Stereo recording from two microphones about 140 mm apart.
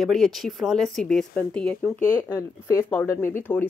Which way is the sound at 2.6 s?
15° left (ahead or behind).